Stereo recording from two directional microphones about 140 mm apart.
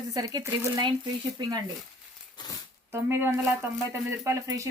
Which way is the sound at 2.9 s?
15° right (ahead or behind).